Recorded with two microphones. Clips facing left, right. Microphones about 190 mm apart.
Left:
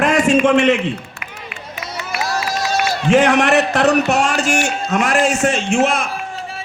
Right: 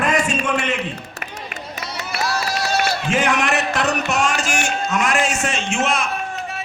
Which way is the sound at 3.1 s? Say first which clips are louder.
Left 11 dB; 70° left (ahead or behind).